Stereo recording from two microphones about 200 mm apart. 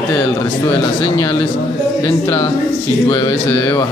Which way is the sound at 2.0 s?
20° left (ahead or behind).